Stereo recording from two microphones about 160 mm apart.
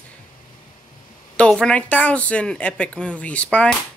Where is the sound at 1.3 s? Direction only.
5° left (ahead or behind).